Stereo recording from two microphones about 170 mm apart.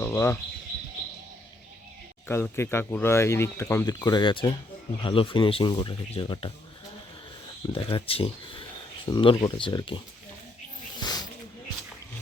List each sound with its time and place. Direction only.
0.0 s bird: 15° left (ahead or behind)
2.2 s speech: 15° left (ahead or behind); by 6.5 s 30° left (ahead or behind)
7.7 s speech: 30° left (ahead or behind)
11.0 s a sound: 25° left (ahead or behind)